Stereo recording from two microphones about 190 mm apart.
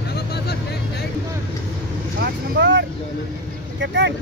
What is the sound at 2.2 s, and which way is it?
Vehicle, 70° right (ahead or behind).